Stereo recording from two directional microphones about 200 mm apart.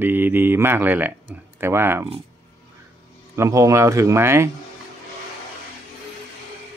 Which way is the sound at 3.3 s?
15° right (ahead or behind).